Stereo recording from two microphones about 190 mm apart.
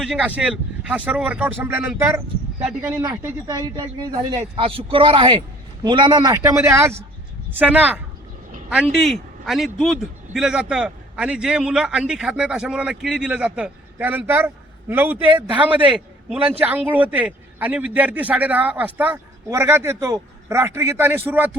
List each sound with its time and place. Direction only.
0.0 s a man's voice: 5° right (ahead or behind)
3.0 s a man's voice: 20° right (ahead or behind)